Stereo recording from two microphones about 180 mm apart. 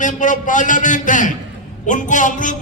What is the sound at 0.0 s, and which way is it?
A man's voice, 45° left (ahead or behind).